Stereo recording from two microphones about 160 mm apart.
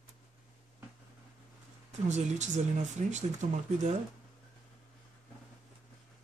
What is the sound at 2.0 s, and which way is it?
Speech, 45° right (ahead or behind).